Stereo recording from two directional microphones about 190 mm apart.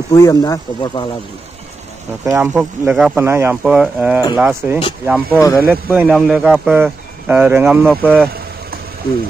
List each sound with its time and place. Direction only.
0.1 s speech: 15° left (ahead or behind)
2.2 s speech: 10° right (ahead or behind)